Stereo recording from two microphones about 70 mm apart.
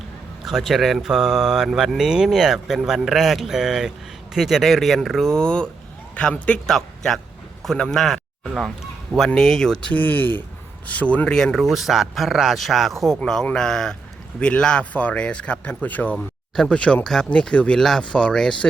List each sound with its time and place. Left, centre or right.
0.4 s speech: centre
6.7 s a man's voice: centre
9.3 s speech: centre
10.0 s a man's voice: left
11.3 s a man's voice: centre
17.7 s speech: centre